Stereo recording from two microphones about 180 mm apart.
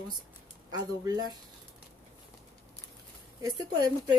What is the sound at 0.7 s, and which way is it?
Speech, 20° right (ahead or behind).